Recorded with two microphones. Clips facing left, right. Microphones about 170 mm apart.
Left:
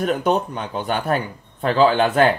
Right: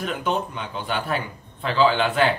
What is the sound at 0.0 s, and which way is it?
Speech, 45° left (ahead or behind).